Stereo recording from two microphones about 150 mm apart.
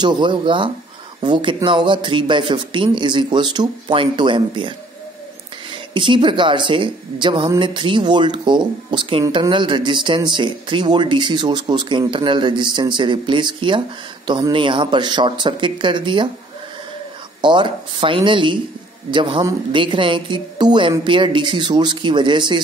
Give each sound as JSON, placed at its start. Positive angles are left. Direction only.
{"t": 0.0, "sound": "speech", "side_deg": -30}
{"t": 5.9, "sound": "speech", "side_deg": -30}
{"t": 17.4, "sound": "speech", "side_deg": -30}